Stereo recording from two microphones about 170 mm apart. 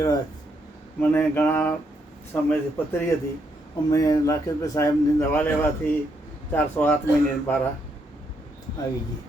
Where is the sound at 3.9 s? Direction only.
20° left (ahead or behind).